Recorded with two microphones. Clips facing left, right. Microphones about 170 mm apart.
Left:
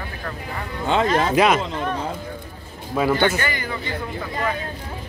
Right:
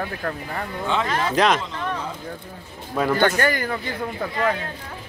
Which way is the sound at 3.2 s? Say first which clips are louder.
Right 2 dB; 50° right (ahead or behind).